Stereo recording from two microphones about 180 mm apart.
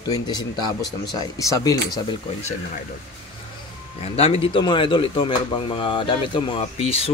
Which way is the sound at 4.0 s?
35° left (ahead or behind).